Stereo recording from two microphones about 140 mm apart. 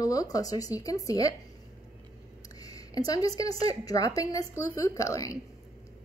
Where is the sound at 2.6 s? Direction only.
25° left (ahead or behind).